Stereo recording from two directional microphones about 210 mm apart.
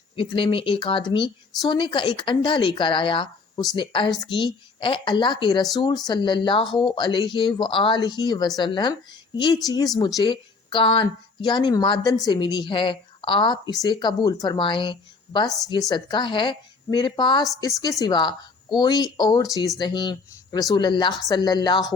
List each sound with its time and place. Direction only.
0.2 s speech: 25° left (ahead or behind)